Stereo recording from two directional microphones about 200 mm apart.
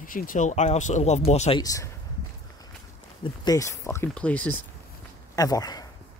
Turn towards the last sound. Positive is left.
turn(degrees=20)  # may be behind; listen again after turning